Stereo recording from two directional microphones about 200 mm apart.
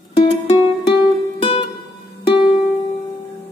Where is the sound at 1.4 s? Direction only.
30° left (ahead or behind).